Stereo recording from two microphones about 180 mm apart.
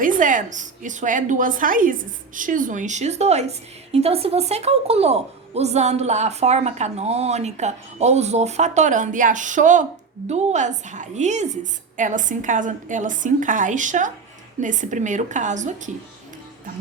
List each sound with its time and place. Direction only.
0.0 s a woman's voice: 45° right (ahead or behind)